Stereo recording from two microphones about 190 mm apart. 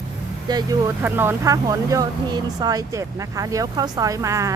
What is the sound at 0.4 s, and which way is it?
Speech, 20° right (ahead or behind).